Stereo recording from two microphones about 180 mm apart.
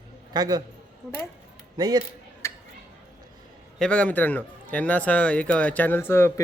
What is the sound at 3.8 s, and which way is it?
A man's voice, 5° left (ahead or behind).